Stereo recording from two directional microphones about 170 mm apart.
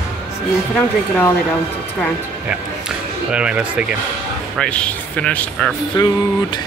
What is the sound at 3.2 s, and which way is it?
Speech, 5° right (ahead or behind).